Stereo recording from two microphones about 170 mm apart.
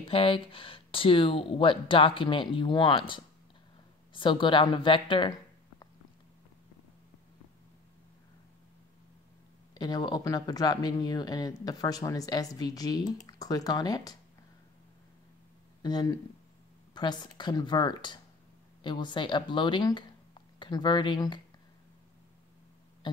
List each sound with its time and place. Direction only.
0.0 s speech: 30° left (ahead or behind)
9.8 s speech: 25° left (ahead or behind)
15.8 s speech: 25° left (ahead or behind)